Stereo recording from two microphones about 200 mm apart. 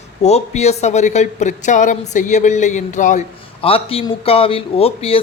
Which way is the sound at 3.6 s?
30° left (ahead or behind).